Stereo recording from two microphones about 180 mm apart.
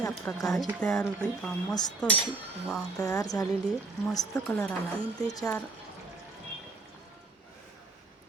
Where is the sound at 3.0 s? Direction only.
20° left (ahead or behind).